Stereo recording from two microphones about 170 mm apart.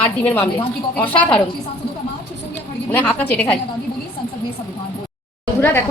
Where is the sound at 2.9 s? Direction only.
10° left (ahead or behind).